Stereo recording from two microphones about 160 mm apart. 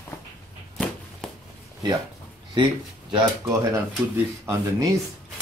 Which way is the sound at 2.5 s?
30° right (ahead or behind).